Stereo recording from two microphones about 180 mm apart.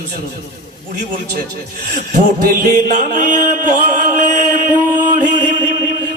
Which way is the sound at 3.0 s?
45° right (ahead or behind).